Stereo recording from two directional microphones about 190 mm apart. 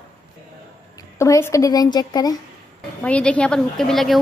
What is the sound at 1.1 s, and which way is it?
A woman's voice, 15° left (ahead or behind).